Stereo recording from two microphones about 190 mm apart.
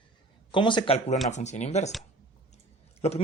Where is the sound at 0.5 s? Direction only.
25° left (ahead or behind).